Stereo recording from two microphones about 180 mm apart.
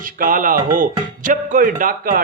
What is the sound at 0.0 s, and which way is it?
Speech, 50° right (ahead or behind).